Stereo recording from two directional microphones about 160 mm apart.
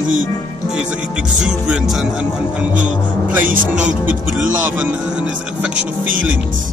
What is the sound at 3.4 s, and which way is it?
Speech, 60° right (ahead or behind).